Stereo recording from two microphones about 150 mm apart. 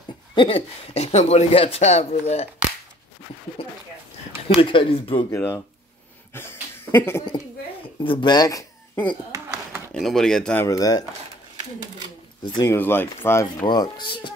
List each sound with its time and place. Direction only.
0.3 s speech: 35° left (ahead or behind)
3.6 s a sound: 40° left (ahead or behind)
4.5 s speech: 35° left (ahead or behind)
5.3 s speech: 20° left (ahead or behind)
6.3 s a sound: 15° left (ahead or behind)
8.0 s speech: 35° left (ahead or behind)
9.3 s a sound: 15° right (ahead or behind)
9.9 s speech: centre (ahead or behind); by 11.1 s 25° left (ahead or behind)
12.5 s speech: 15° left (ahead or behind)
13.7 s speech: 30° left (ahead or behind)